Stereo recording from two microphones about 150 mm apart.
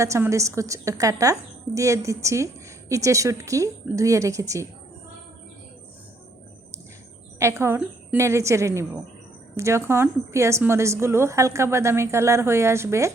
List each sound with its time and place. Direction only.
0.0 s a woman's voice: 20° right (ahead or behind)
7.3 s a woman's voice: 20° right (ahead or behind)